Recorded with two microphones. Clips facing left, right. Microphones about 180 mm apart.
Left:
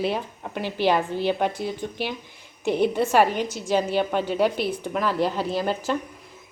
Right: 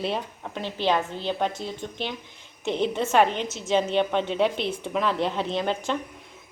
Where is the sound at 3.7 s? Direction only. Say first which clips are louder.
Even; 5° left (ahead or behind).